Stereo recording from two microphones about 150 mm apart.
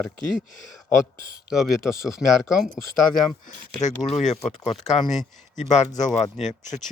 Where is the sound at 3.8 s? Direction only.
50° left (ahead or behind).